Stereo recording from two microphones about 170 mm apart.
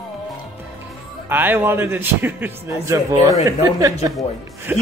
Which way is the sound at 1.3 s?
10° right (ahead or behind).